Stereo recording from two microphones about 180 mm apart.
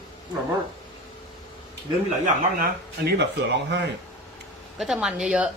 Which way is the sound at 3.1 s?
70° right (ahead or behind).